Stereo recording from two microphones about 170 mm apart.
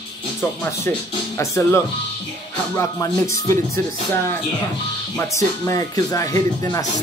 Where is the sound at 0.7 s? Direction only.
15° left (ahead or behind).